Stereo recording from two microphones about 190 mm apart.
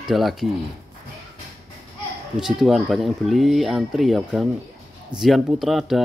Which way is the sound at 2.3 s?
Centre (ahead or behind).